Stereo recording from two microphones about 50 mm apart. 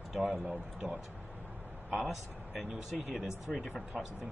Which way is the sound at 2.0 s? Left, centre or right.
Centre.